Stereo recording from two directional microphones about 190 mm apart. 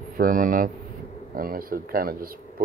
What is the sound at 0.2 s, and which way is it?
Speech, 45° right (ahead or behind).